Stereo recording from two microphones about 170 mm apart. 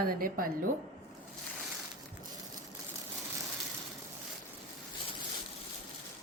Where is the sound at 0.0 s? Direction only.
60° right (ahead or behind).